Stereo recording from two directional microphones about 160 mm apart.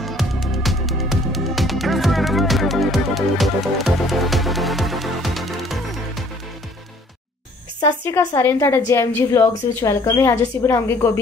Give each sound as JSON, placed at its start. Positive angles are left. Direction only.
{"t": 0.0, "sound": "music", "side_deg": 0}
{"t": 7.8, "sound": "a woman's voice", "side_deg": 20}